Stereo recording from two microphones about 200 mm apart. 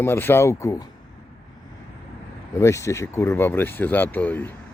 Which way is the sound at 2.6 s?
15° left (ahead or behind).